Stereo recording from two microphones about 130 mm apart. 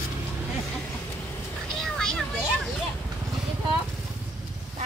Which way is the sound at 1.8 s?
5° left (ahead or behind).